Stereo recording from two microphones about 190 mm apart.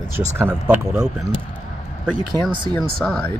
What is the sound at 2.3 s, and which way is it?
Speech, 25° right (ahead or behind).